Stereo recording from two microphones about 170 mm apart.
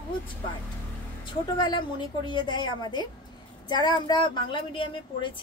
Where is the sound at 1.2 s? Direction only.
25° left (ahead or behind).